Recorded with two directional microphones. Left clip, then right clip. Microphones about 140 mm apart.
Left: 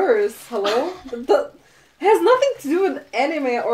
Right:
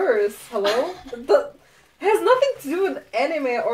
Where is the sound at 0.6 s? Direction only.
10° right (ahead or behind).